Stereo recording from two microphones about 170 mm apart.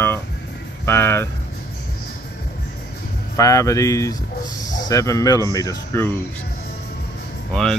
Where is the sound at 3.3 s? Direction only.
20° left (ahead or behind).